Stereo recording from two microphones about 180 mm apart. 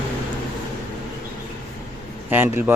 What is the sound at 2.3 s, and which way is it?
Speech, 10° right (ahead or behind).